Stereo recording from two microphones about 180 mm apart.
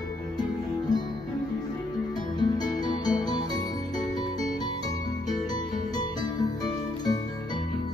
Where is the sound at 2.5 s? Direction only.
25° left (ahead or behind).